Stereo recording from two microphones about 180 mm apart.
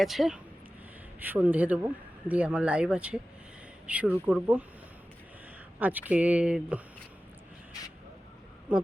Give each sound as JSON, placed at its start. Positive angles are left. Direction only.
{"t": 0.0, "sound": "speech", "side_deg": 0}
{"t": 5.8, "sound": "speech", "side_deg": -10}
{"t": 8.7, "sound": "speech", "side_deg": -5}